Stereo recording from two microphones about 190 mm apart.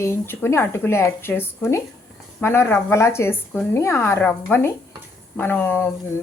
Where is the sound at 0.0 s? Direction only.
10° left (ahead or behind).